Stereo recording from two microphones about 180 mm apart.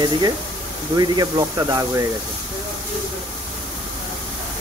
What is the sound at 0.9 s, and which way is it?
Speech, 20° right (ahead or behind).